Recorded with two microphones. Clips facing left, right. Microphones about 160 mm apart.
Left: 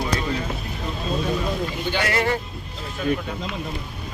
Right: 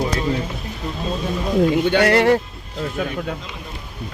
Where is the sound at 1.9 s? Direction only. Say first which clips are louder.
Right 5 dB; 65° right (ahead or behind).